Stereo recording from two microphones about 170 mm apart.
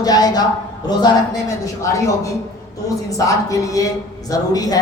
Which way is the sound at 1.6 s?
20° left (ahead or behind).